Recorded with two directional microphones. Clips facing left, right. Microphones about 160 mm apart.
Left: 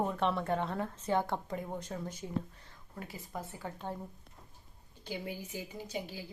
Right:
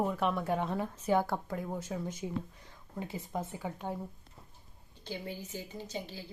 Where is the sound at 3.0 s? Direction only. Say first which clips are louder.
Right 5 dB; 25° right (ahead or behind).